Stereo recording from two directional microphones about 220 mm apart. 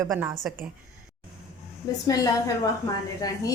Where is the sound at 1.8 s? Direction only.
15° left (ahead or behind).